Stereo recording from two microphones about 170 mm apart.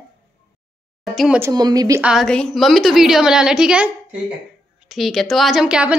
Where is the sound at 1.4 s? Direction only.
20° right (ahead or behind).